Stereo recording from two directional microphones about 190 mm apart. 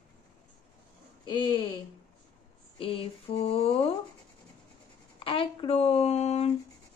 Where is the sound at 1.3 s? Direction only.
25° left (ahead or behind).